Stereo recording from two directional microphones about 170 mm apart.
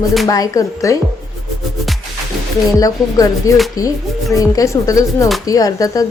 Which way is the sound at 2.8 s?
20° left (ahead or behind).